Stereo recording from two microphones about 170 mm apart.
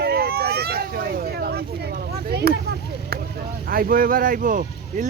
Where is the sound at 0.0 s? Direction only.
65° right (ahead or behind).